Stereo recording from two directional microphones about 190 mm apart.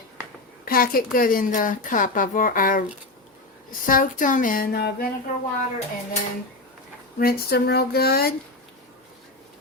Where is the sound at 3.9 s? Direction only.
45° left (ahead or behind).